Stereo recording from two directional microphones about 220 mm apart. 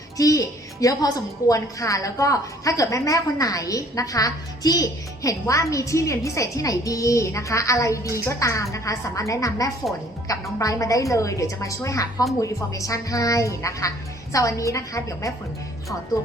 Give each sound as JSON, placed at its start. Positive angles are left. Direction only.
{"t": 0.2, "sound": "a woman's voice", "side_deg": 15}